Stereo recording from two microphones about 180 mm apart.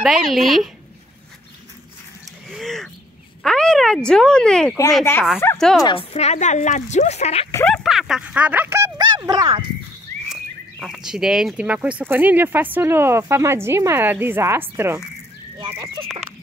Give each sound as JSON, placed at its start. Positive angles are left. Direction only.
{"t": 0.0, "sound": "speech", "side_deg": 0}
{"t": 2.4, "sound": "a sound", "side_deg": 0}
{"t": 3.4, "sound": "speech", "side_deg": 5}
{"t": 5.9, "sound": "speech", "side_deg": 35}
{"t": 7.6, "sound": "speech", "side_deg": 0}
{"t": 10.2, "sound": "speech", "side_deg": 0}